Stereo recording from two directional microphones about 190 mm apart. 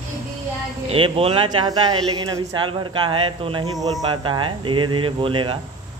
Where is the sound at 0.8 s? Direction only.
30° right (ahead or behind).